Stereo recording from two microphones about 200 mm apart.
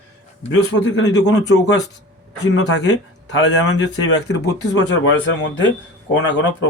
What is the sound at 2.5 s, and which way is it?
Speech, 60° left (ahead or behind).